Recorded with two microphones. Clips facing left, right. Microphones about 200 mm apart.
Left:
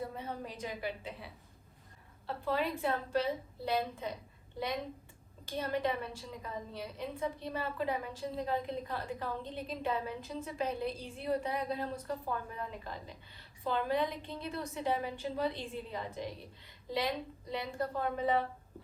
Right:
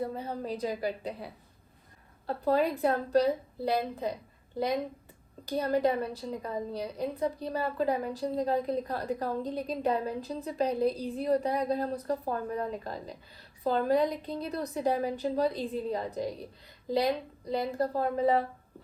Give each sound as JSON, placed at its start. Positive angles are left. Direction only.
{"t": 0.0, "sound": "a woman's voice", "side_deg": -35}
{"t": 5.5, "sound": "a woman's voice", "side_deg": -40}
{"t": 17.5, "sound": "a woman's voice", "side_deg": -35}